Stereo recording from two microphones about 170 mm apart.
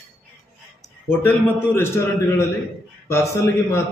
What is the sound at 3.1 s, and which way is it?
Speech, 15° left (ahead or behind).